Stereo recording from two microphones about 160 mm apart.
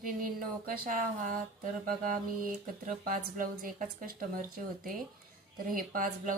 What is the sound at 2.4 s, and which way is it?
Speech, 60° right (ahead or behind).